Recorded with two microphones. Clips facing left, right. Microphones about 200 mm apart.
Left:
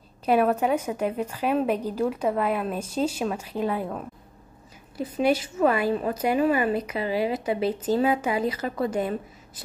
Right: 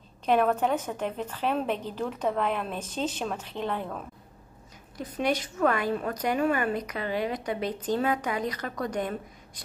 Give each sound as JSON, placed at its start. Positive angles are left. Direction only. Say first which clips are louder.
{"t": 0.2, "sound": "a woman's voice", "louder": "left 2 dB", "side_deg": 10}